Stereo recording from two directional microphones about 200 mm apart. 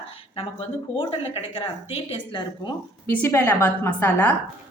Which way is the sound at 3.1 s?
10° left (ahead or behind).